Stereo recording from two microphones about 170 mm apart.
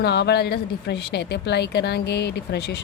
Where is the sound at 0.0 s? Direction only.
75° left (ahead or behind).